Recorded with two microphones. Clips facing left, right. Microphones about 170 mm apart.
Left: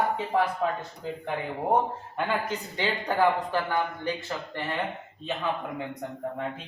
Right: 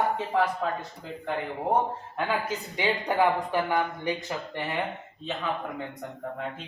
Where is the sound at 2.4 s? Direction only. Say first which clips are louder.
Right 1 dB; 10° right (ahead or behind).